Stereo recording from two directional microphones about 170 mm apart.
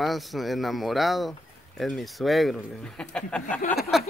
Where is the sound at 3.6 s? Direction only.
45° left (ahead or behind).